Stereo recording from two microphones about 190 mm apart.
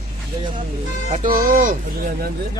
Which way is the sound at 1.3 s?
45° right (ahead or behind).